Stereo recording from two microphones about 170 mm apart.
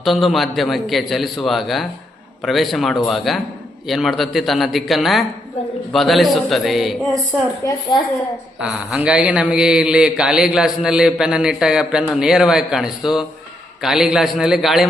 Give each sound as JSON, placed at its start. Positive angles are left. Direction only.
{"t": 0.0, "sound": "a man's voice", "side_deg": 0}
{"t": 7.6, "sound": "a woman's voice", "side_deg": 25}
{"t": 8.5, "sound": "a man's voice", "side_deg": -5}